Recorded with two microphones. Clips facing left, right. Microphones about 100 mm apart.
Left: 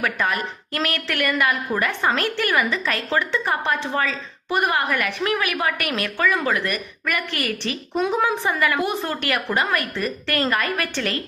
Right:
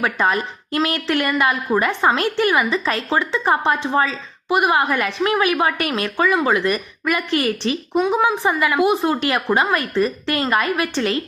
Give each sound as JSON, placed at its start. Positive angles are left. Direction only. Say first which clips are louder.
{"t": 0.0, "sound": "a woman's voice", "louder": "right 4 dB", "side_deg": -25}